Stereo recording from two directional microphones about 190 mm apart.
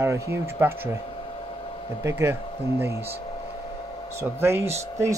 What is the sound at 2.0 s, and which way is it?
Speech, 15° right (ahead or behind).